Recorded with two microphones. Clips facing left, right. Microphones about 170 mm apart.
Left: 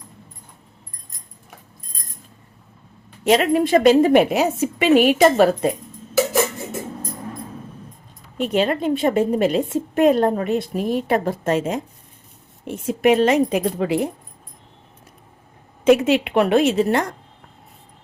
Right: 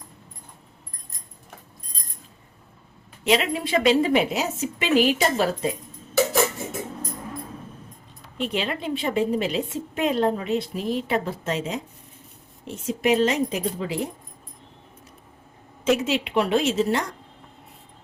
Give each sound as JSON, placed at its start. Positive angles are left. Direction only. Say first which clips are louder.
{"t": 3.2, "sound": "a woman's voice", "louder": "left 6 dB", "side_deg": 45}
{"t": 8.4, "sound": "a woman's voice", "louder": "left 7 dB", "side_deg": 45}
{"t": 15.8, "sound": "speech", "louder": "left 7 dB", "side_deg": 60}